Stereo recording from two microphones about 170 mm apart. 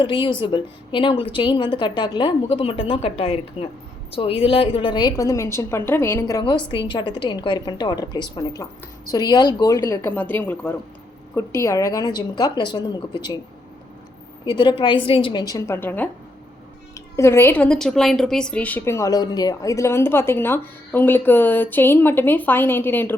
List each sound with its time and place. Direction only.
0.0 s a woman's voice: 30° left (ahead or behind)
14.4 s a woman's voice: 25° left (ahead or behind); by 23.1 s 10° left (ahead or behind)